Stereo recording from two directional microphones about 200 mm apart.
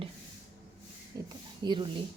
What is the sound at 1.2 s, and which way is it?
Speech, 20° right (ahead or behind).